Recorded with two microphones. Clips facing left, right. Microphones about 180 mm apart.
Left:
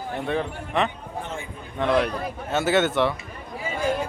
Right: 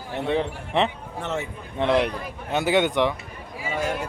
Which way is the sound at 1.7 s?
25° right (ahead or behind).